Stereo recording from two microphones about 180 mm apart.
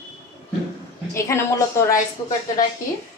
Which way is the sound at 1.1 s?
15° left (ahead or behind).